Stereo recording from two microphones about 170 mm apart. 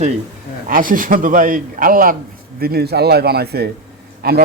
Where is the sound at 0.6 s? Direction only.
55° right (ahead or behind).